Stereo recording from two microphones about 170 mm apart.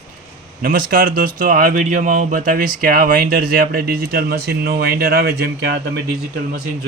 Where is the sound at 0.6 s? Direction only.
55° right (ahead or behind).